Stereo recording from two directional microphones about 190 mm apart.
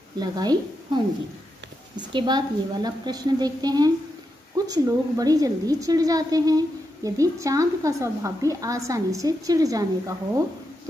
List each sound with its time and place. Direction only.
0.2 s a woman's voice: 20° right (ahead or behind)
2.0 s a woman's voice: 25° right (ahead or behind)